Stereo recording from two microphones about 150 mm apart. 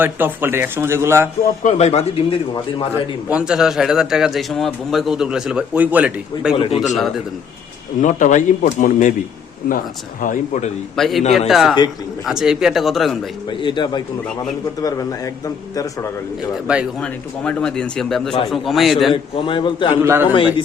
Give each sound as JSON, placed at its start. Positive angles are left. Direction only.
{"t": 0.0, "sound": "a man's voice", "side_deg": -15}
{"t": 1.6, "sound": "speech", "side_deg": 45}
{"t": 3.2, "sound": "a man's voice", "side_deg": -5}
{"t": 6.6, "sound": "speech", "side_deg": 35}
{"t": 6.8, "sound": "a man's voice", "side_deg": 0}
{"t": 8.0, "sound": "speech", "side_deg": 55}
{"t": 10.9, "sound": "a man's voice", "side_deg": 0}
{"t": 13.5, "sound": "a man's voice", "side_deg": 35}
{"t": 17.0, "sound": "a man's voice", "side_deg": 5}
{"t": 19.1, "sound": "speech", "side_deg": 35}
{"t": 20.0, "sound": "a man's voice", "side_deg": -15}
{"t": 20.3, "sound": "speech", "side_deg": 35}